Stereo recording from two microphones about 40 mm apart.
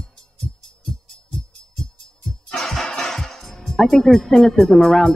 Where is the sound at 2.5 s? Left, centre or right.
Centre.